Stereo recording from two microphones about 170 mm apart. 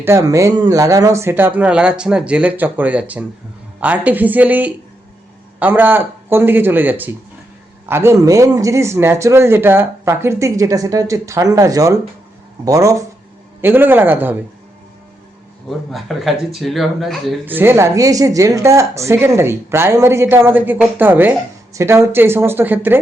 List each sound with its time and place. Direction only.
0.0 s a woman's voice: 15° right (ahead or behind)
15.9 s speech: centre (ahead or behind)
17.4 s a woman's voice: 10° right (ahead or behind)